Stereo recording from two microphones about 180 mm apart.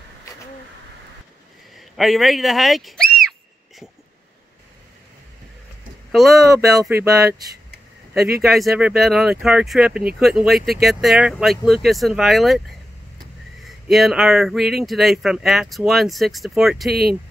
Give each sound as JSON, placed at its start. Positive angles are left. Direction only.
{"t": 1.8, "sound": "speech", "side_deg": 0}
{"t": 6.4, "sound": "speech", "side_deg": -20}
{"t": 8.5, "sound": "speech", "side_deg": 0}
{"t": 13.7, "sound": "speech", "side_deg": 0}